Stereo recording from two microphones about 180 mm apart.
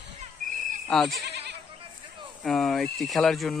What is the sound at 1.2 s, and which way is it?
Goat, 65° right (ahead or behind).